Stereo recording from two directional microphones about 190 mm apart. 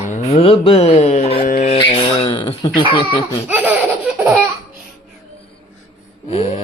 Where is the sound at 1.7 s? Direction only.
25° left (ahead or behind).